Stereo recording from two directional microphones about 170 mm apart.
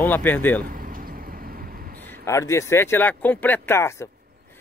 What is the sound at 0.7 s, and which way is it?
Vehicle, 55° right (ahead or behind).